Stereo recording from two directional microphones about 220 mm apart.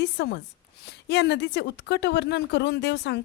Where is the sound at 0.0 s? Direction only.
50° left (ahead or behind).